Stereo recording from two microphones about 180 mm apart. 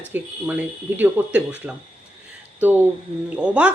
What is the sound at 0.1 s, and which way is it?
Speech, 10° right (ahead or behind).